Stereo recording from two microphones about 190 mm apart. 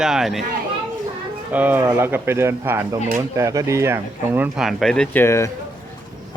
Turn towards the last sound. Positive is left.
turn(degrees=15)  # may be behind; listen again after turning